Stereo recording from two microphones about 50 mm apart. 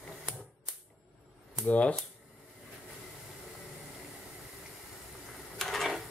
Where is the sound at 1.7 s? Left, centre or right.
Left.